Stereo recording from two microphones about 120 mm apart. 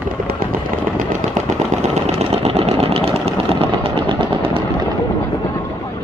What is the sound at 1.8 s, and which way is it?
Engine, 60° right (ahead or behind).